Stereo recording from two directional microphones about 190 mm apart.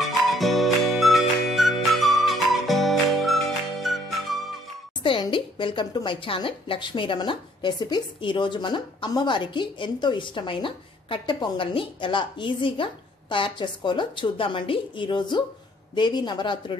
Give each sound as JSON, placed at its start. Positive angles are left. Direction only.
{"t": 0.0, "sound": "music", "side_deg": 0}
{"t": 5.0, "sound": "a woman's voice", "side_deg": 25}